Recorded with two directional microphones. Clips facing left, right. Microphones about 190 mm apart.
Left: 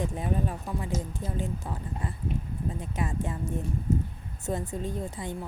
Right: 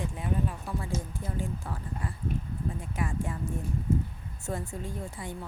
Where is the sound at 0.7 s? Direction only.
15° left (ahead or behind).